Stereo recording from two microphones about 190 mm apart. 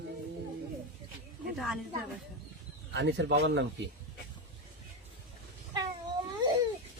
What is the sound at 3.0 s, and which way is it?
Speech, 65° right (ahead or behind).